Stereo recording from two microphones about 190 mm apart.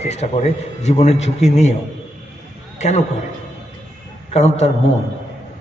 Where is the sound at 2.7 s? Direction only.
35° left (ahead or behind).